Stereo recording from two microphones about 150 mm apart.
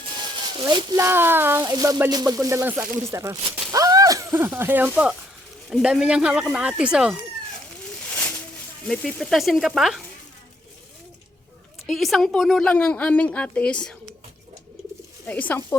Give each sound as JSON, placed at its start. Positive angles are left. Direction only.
{"t": 0.0, "sound": "speech", "side_deg": -30}
{"t": 1.6, "sound": "a sound", "side_deg": -25}
{"t": 3.1, "sound": "speech", "side_deg": -20}
{"t": 5.6, "sound": "speech", "side_deg": 0}
{"t": 8.9, "sound": "speech", "side_deg": 0}
{"t": 11.9, "sound": "a woman's voice", "side_deg": 0}
{"t": 15.3, "sound": "a woman's voice", "side_deg": 10}